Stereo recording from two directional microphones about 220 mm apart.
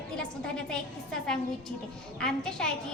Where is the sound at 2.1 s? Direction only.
5° left (ahead or behind).